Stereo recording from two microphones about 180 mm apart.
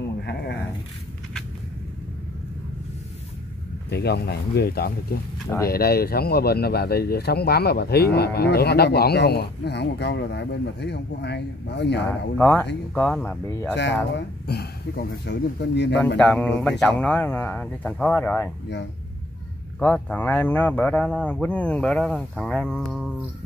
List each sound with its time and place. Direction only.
0.2 s a sound: 65° left (ahead or behind)
3.9 s speech: 65° left (ahead or behind)
12.1 s speech: 10° left (ahead or behind)
14.1 s speech: 65° left (ahead or behind)
16.2 s speech: 10° left (ahead or behind)
19.8 s speech: 10° left (ahead or behind)